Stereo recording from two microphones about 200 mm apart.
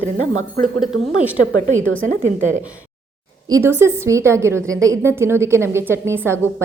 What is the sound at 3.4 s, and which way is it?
A woman's voice, 15° right (ahead or behind).